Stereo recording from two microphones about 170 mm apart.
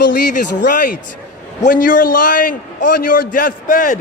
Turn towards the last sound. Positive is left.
turn(degrees=55)  # may be behind; listen again after turning